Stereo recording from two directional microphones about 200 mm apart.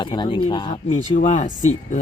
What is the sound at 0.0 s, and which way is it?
Speech, 25° left (ahead or behind).